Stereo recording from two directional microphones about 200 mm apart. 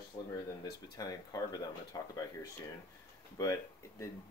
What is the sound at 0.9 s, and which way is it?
Speech, 20° left (ahead or behind).